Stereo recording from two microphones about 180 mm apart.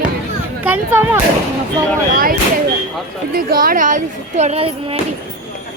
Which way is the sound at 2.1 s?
50° right (ahead or behind).